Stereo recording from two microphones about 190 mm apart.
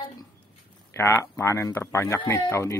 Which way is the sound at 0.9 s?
15° left (ahead or behind).